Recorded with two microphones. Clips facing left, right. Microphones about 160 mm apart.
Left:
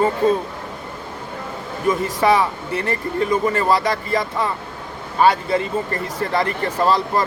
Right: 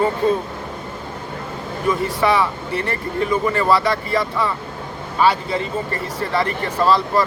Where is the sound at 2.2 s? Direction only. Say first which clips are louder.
Left 1 dB; 45° left (ahead or behind).